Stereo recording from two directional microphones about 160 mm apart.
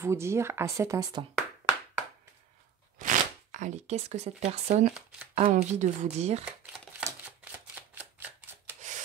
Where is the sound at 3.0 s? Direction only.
50° right (ahead or behind).